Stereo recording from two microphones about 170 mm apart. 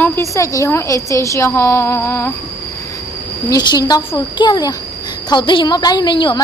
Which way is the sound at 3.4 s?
25° left (ahead or behind).